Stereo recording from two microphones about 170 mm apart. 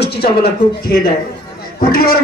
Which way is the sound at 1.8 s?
60° left (ahead or behind).